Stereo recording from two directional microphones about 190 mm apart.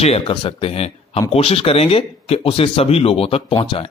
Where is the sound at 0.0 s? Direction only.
30° left (ahead or behind).